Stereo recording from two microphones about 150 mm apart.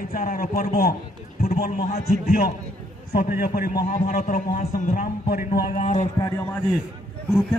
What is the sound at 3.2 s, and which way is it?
A man's voice, 70° left (ahead or behind).